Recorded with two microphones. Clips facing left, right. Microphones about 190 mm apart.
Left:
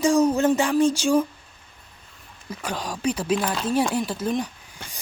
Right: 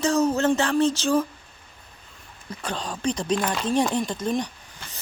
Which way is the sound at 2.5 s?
10° left (ahead or behind).